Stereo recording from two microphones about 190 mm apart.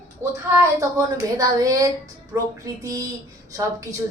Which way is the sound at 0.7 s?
20° right (ahead or behind).